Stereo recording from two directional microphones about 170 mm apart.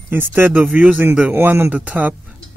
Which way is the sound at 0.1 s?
10° right (ahead or behind).